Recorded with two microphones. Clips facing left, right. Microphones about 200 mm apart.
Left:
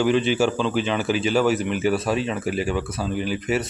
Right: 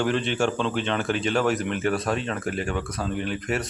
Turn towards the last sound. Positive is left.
turn(degrees=5)  # may be behind; listen again after turning